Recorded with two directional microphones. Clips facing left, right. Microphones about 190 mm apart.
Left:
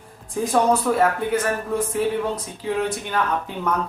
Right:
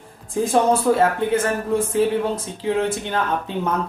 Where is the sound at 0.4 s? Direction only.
25° right (ahead or behind).